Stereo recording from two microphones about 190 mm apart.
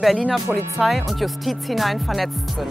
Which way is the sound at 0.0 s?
Centre (ahead or behind).